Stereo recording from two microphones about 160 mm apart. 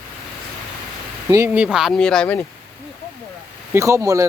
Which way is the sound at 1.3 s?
15° right (ahead or behind).